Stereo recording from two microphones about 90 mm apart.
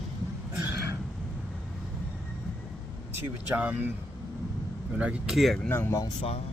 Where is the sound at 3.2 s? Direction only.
20° right (ahead or behind).